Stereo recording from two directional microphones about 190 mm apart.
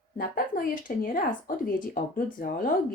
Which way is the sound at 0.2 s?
50° left (ahead or behind).